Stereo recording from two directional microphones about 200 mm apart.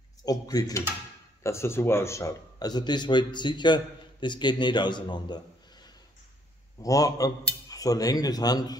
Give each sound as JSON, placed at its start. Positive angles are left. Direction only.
{"t": 0.2, "sound": "a man's voice", "side_deg": 20}